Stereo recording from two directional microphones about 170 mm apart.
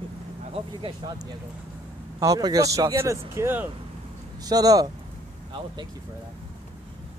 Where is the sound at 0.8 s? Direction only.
25° right (ahead or behind).